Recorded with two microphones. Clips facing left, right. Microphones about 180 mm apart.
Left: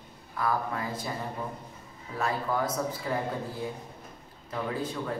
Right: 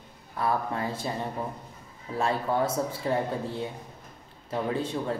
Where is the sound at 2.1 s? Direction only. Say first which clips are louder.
Right 3 dB; 30° right (ahead or behind).